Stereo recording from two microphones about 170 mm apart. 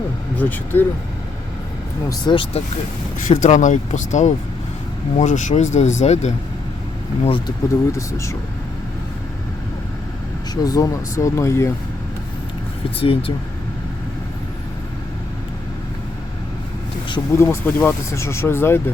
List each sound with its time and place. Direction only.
0.3 s speech: 10° left (ahead or behind)
2.0 s speech: 30° left (ahead or behind)
3.2 s speech: 45° left (ahead or behind)
7.3 s speech: 30° left (ahead or behind)
7.9 s speech: 15° left (ahead or behind)
10.5 s speech: 20° left (ahead or behind)
13.0 s speech: 30° left (ahead or behind)
17.1 s speech: 15° left (ahead or behind)